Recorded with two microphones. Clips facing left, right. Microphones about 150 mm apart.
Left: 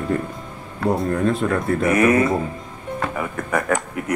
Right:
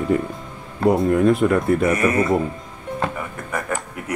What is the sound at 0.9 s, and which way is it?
Speech, 5° right (ahead or behind).